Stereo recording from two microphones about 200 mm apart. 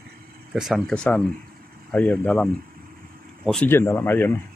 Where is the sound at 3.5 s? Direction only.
10° left (ahead or behind).